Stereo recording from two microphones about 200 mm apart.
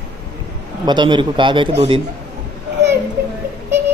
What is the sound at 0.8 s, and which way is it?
Speech, 25° right (ahead or behind).